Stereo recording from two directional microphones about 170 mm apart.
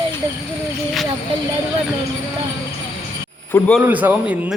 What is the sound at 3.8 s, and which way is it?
Speech, 10° right (ahead or behind).